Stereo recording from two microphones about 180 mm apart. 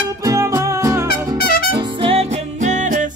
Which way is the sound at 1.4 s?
55° left (ahead or behind).